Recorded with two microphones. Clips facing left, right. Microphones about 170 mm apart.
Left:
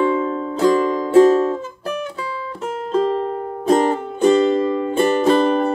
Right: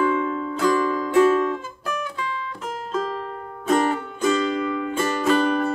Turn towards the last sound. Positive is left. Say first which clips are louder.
# left 5 dB
turn(degrees=30)  # may be behind; listen again after turning